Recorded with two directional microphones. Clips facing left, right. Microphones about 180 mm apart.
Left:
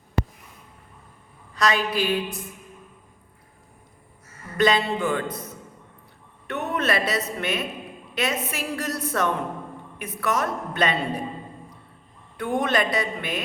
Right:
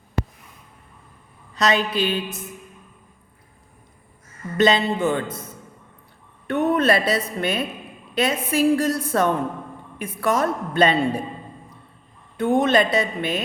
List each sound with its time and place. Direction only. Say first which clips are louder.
1.5 s a woman's voice: right 2 dB; 25° right (ahead or behind)
4.5 s a woman's voice: right 3 dB; 25° right (ahead or behind)
6.5 s a woman's voice: right 6 dB; 30° right (ahead or behind)
12.4 s a woman's voice: right 6 dB; 25° right (ahead or behind)